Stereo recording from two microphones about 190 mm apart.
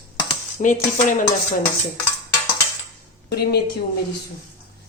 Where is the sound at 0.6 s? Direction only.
45° left (ahead or behind).